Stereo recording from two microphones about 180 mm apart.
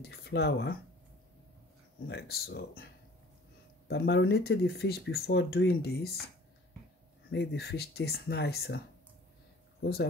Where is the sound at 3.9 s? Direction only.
65° left (ahead or behind).